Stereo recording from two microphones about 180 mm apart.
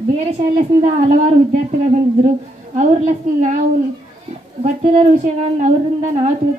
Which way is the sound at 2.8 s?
45° right (ahead or behind).